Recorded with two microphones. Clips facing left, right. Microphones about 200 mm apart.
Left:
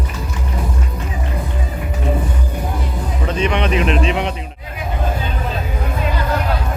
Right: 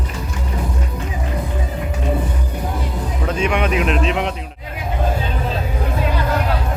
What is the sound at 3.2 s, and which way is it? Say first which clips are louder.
Speech: even; 5° right (ahead or behind).